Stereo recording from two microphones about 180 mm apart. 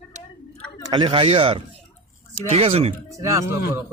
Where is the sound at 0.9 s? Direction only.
25° right (ahead or behind).